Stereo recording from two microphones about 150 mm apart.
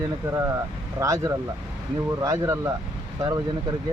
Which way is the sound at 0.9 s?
20° right (ahead or behind).